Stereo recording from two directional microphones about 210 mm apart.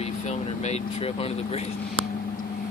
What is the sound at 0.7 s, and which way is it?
Speech, 30° left (ahead or behind).